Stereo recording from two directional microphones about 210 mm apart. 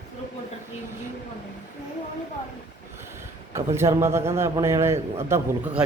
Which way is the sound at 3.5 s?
15° right (ahead or behind).